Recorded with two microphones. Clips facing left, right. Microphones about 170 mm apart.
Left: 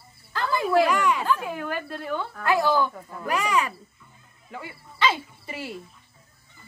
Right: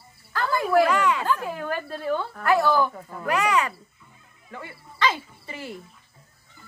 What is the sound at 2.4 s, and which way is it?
Speech, 15° left (ahead or behind).